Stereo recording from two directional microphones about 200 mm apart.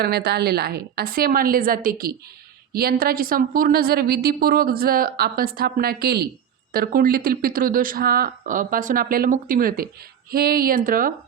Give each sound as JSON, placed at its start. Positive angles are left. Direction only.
{"t": 0.0, "sound": "a woman's voice", "side_deg": -50}